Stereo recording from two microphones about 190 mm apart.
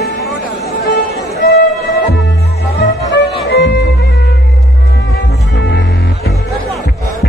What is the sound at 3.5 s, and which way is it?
Music, 60° left (ahead or behind).